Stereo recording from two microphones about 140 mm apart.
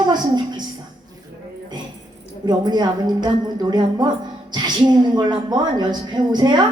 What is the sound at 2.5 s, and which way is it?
Speech, 30° right (ahead or behind).